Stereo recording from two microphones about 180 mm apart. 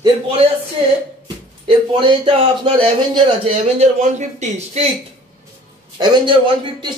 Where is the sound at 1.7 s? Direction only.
25° right (ahead or behind).